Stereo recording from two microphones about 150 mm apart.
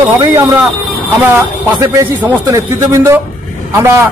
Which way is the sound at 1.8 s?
20° right (ahead or behind).